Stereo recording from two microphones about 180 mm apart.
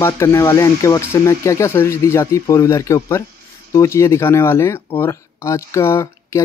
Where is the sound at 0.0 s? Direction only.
15° left (ahead or behind).